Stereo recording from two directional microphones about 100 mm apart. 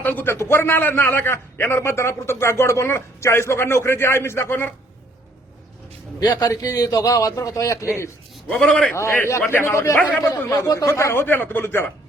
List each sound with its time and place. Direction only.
0.0 s a man's voice: 20° left (ahead or behind)
6.1 s a man's voice: 40° left (ahead or behind)
8.4 s a man's voice: 5° left (ahead or behind)
9.0 s a man's voice: 25° left (ahead or behind)